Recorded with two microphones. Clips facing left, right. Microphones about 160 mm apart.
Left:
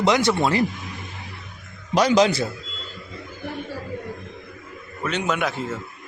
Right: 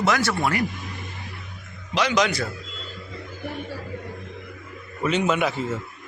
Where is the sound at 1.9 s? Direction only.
35° left (ahead or behind).